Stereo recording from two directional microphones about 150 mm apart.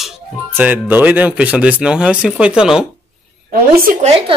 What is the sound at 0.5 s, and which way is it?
Speech, 15° right (ahead or behind).